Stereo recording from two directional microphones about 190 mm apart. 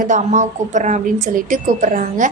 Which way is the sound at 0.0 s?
40° right (ahead or behind).